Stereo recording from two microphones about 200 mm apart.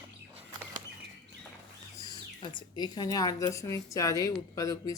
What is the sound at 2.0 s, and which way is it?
Speech, 20° left (ahead or behind).